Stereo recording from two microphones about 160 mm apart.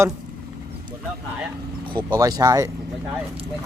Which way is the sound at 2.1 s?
25° right (ahead or behind).